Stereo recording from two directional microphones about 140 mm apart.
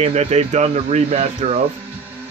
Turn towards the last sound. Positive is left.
turn(degrees=-50)  # may be behind; listen again after turning